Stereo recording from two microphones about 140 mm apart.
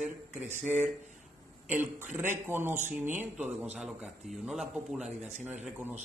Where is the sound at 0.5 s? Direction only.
15° right (ahead or behind).